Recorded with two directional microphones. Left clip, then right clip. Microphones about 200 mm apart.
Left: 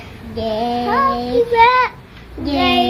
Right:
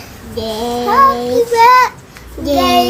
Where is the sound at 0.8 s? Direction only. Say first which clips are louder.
Right 8 dB; 15° right (ahead or behind).